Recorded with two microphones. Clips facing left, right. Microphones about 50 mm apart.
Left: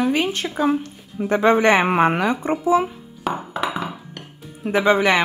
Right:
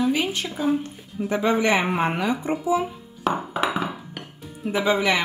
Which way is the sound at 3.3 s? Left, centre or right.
Centre.